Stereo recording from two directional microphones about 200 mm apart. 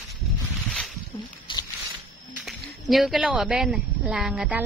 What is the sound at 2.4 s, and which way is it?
Speech, centre (ahead or behind).